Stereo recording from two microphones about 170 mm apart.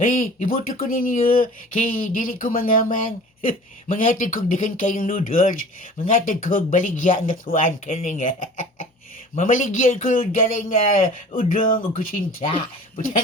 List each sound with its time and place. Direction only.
0.0 s speech: 55° left (ahead or behind)